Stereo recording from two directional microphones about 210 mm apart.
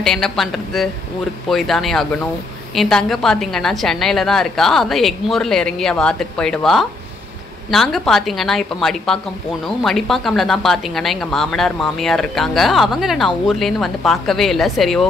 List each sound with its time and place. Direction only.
0.0 s a woman's voice: centre (ahead or behind)